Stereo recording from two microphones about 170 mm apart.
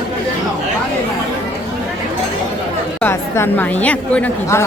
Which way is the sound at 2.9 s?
15° left (ahead or behind).